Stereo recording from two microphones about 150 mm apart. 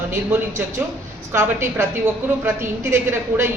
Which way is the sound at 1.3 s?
15° right (ahead or behind).